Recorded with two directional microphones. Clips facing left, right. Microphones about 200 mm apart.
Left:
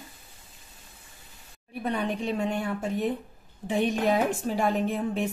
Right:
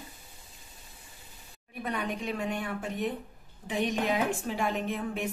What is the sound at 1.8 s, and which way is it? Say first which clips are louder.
A woman's voice: left 4 dB; 30° left (ahead or behind).